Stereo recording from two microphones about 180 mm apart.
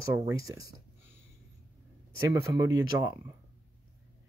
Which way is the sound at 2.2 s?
15° right (ahead or behind).